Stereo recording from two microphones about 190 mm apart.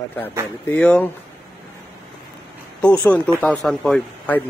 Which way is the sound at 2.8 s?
5° left (ahead or behind).